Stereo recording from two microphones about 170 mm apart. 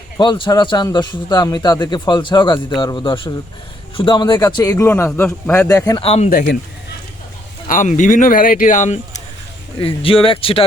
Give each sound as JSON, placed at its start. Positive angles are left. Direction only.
{"t": 0.2, "sound": "a man's voice", "side_deg": 30}
{"t": 5.6, "sound": "a man's voice", "side_deg": 20}
{"t": 6.0, "sound": "speech", "side_deg": 35}
{"t": 6.3, "sound": "speech", "side_deg": 65}
{"t": 7.7, "sound": "speech", "side_deg": 45}
{"t": 9.8, "sound": "speech", "side_deg": 30}